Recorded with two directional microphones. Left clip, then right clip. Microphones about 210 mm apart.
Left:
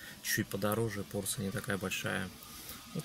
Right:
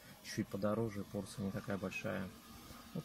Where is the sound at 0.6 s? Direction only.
20° left (ahead or behind).